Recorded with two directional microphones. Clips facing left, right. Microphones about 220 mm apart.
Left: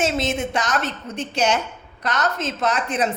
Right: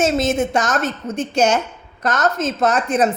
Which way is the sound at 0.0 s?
45° right (ahead or behind).